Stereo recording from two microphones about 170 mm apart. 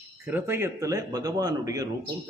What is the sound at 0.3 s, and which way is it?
A man's voice, 10° right (ahead or behind).